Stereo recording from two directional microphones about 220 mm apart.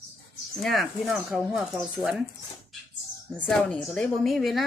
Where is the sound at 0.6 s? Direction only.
Centre (ahead or behind).